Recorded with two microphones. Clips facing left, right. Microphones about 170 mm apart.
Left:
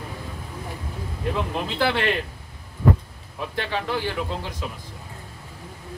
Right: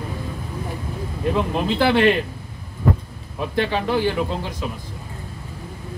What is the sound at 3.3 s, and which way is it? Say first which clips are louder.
Speech: right 6 dB; 15° right (ahead or behind).